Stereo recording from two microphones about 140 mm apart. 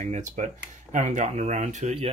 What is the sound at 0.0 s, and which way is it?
Speech, 65° right (ahead or behind).